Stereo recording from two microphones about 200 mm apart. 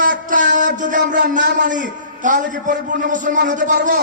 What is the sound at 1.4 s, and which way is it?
Speech, 55° right (ahead or behind).